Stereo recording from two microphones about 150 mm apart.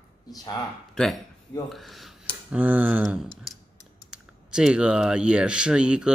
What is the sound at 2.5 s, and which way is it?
Speech, 10° right (ahead or behind).